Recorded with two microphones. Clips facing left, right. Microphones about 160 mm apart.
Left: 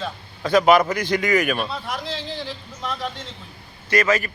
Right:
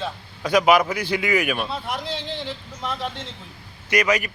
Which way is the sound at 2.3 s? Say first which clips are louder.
Even; 20° right (ahead or behind).